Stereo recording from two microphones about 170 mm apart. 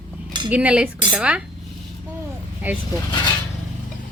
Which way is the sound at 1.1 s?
5° right (ahead or behind).